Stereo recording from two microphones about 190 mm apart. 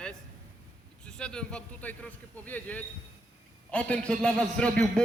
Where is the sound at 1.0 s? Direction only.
5° left (ahead or behind).